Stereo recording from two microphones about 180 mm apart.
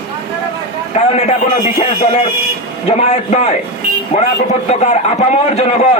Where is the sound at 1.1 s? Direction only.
40° left (ahead or behind).